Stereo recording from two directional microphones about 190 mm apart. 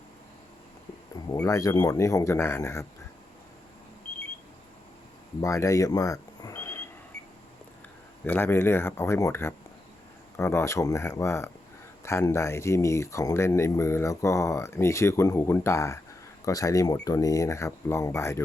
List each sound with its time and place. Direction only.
1.1 s speech: 20° left (ahead or behind)
5.4 s speech: 15° left (ahead or behind)
8.2 s speech: 10° left (ahead or behind)